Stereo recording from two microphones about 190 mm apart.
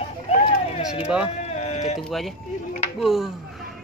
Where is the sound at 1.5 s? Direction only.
35° left (ahead or behind).